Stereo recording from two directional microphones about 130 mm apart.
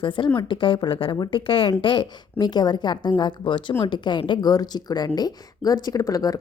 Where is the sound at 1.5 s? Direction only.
45° left (ahead or behind).